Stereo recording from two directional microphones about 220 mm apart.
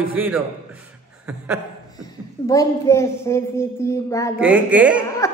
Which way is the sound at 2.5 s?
15° left (ahead or behind).